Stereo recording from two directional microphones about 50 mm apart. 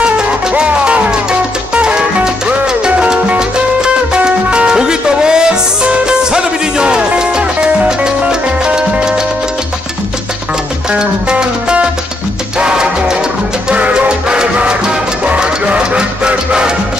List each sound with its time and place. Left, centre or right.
0.0 s music: centre
10.9 s music: centre